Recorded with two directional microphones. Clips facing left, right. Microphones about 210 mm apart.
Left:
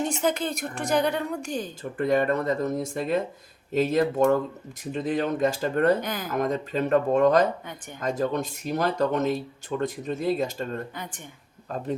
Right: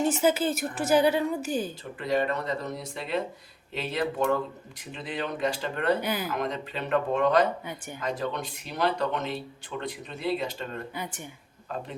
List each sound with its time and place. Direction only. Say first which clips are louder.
0.0 s speech: right 2 dB; 5° right (ahead or behind)
1.8 s speech: left 4 dB; 50° left (ahead or behind)
6.0 s speech: right 1 dB; 10° right (ahead or behind)
6.2 s speech: left 4 dB; 45° left (ahead or behind)
10.9 s speech: right 2 dB; 10° right (ahead or behind)